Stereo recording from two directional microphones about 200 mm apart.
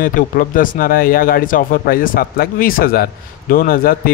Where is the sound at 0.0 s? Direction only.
45° left (ahead or behind).